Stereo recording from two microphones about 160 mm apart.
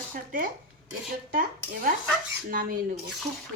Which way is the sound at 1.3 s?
65° right (ahead or behind).